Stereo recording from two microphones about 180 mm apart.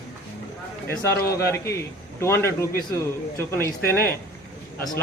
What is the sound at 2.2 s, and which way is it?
A man's voice, 15° left (ahead or behind).